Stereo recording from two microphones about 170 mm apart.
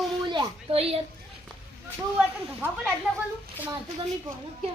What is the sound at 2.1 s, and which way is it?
Speech, 10° right (ahead or behind).